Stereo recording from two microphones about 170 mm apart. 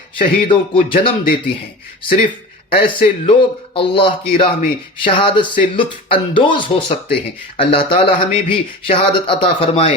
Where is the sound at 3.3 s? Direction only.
30° left (ahead or behind).